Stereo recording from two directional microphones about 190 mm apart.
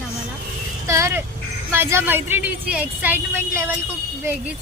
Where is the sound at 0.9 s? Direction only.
15° right (ahead or behind).